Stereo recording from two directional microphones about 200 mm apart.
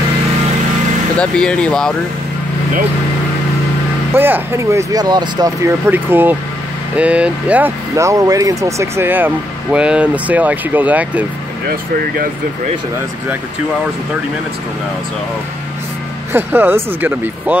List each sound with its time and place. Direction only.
1.1 s speech: 5° left (ahead or behind)
4.1 s speech: 10° right (ahead or behind)
11.7 s speech: 45° right (ahead or behind)
16.3 s speech: 10° right (ahead or behind)